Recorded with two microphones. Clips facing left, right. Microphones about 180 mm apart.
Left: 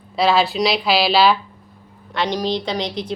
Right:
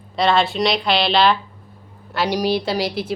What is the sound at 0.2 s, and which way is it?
A woman's voice, centre (ahead or behind).